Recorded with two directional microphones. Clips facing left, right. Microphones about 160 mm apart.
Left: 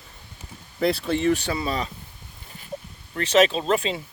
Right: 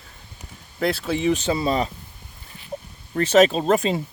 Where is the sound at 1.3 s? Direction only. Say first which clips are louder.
Right 4 dB; 25° right (ahead or behind).